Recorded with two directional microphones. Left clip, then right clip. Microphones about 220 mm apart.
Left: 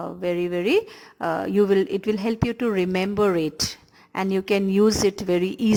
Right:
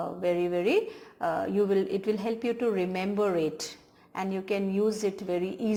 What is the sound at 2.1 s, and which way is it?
Speech, 35° left (ahead or behind).